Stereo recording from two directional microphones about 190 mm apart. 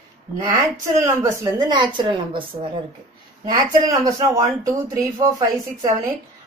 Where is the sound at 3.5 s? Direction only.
20° right (ahead or behind).